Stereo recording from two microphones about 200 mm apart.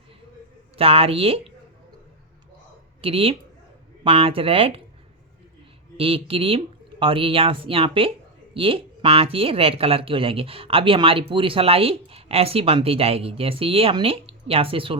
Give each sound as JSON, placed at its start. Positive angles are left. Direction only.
{"t": 0.8, "sound": "speech", "side_deg": -30}
{"t": 3.0, "sound": "speech", "side_deg": -30}
{"t": 6.0, "sound": "speech", "side_deg": -30}